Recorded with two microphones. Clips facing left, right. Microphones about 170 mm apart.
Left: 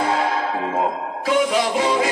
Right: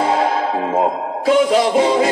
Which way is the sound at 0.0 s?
25° right (ahead or behind).